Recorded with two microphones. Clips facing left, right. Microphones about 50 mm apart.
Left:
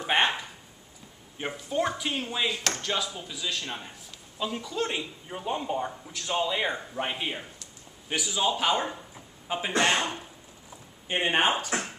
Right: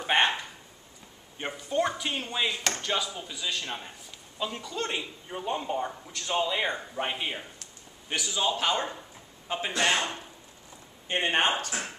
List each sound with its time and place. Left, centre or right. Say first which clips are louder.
0.0 s dog: even; centre
1.4 s a man's voice: even; centre